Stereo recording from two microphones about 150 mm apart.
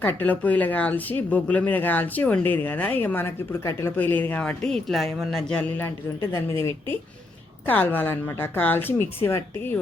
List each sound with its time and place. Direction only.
0.0 s speech: 15° left (ahead or behind)
7.7 s speech: 10° left (ahead or behind)